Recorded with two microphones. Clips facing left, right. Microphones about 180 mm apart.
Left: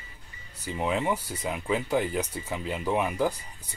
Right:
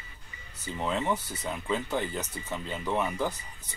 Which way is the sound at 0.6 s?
10° left (ahead or behind).